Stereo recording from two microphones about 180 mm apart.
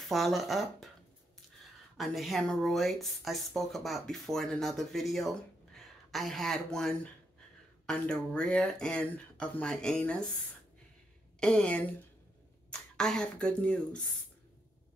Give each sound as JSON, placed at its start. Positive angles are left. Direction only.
{"t": 0.1, "sound": "speech", "side_deg": 0}
{"t": 2.0, "sound": "speech", "side_deg": 0}
{"t": 11.3, "sound": "speech", "side_deg": 5}